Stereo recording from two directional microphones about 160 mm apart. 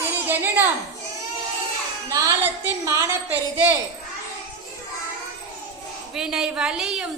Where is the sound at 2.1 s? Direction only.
20° right (ahead or behind).